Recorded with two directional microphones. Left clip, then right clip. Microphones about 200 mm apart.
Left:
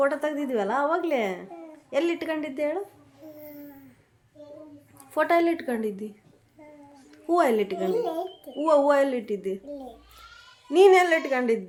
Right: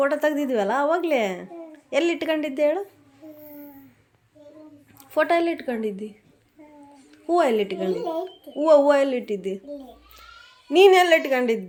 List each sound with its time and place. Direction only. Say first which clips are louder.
0.0 s a woman's voice: right 3 dB; 20° right (ahead or behind)
5.1 s a woman's voice: right 1 dB; 10° right (ahead or behind)
10.7 s a woman's voice: right 3 dB; 15° right (ahead or behind)